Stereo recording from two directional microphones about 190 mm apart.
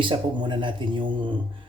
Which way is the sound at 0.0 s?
25° right (ahead or behind).